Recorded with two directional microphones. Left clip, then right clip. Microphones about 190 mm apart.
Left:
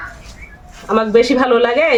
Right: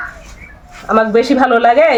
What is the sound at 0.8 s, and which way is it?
Speech, 25° left (ahead or behind).